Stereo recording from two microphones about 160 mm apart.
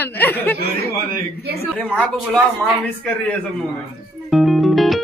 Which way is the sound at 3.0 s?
5° left (ahead or behind).